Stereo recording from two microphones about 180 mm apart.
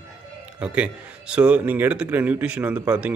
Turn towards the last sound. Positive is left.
turn(degrees=-5)  # may be behind; listen again after turning